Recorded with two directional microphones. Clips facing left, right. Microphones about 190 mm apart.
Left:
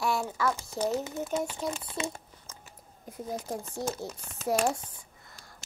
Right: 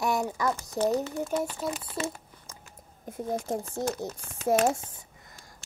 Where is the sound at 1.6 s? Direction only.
Centre (ahead or behind).